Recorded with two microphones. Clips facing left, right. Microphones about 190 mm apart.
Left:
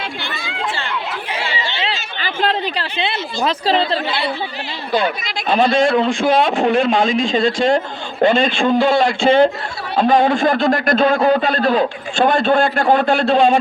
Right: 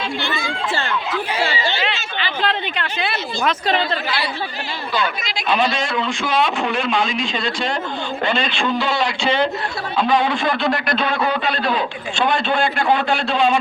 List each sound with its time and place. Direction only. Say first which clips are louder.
0.2 s chatter: right 2 dB; 50° right (ahead or behind)
2.2 s speech: left 4 dB; 35° left (ahead or behind)
4.9 s a man's voice: left 5 dB; 55° left (ahead or behind)